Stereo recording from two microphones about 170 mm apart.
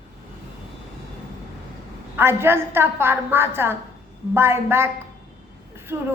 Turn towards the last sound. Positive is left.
turn(degrees=-15)  # may be behind; listen again after turning